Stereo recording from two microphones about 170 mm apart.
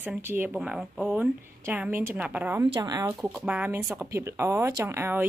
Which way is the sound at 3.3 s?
10° right (ahead or behind).